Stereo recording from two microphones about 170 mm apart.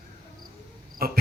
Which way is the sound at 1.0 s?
60° right (ahead or behind).